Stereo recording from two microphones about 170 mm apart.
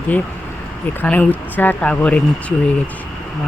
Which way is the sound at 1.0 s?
10° left (ahead or behind).